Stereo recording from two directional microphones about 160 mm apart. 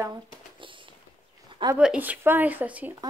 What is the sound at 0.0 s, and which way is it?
Shuffling cards, 30° right (ahead or behind).